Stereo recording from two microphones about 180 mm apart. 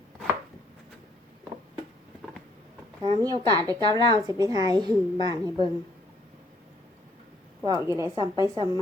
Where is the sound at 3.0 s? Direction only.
25° right (ahead or behind).